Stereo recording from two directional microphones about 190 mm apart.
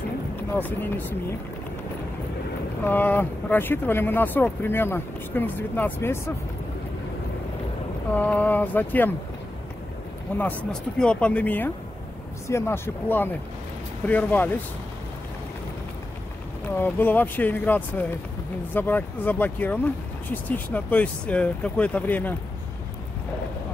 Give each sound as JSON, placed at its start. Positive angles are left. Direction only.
{"t": 0.5, "sound": "speech", "side_deg": 10}
{"t": 2.8, "sound": "speech", "side_deg": 10}
{"t": 8.1, "sound": "speech", "side_deg": 10}
{"t": 10.3, "sound": "speech", "side_deg": 10}
{"t": 16.7, "sound": "speech", "side_deg": 10}